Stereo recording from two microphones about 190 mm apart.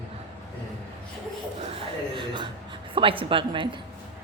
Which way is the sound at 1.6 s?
30° right (ahead or behind).